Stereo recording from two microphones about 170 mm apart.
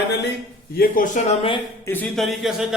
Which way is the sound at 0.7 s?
55° left (ahead or behind).